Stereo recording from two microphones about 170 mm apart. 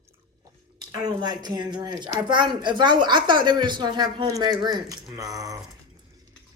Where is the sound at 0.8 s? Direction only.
25° right (ahead or behind).